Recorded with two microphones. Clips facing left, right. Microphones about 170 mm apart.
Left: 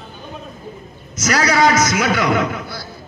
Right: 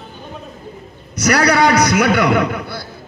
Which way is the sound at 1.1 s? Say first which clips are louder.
Right 3 dB; 65° right (ahead or behind).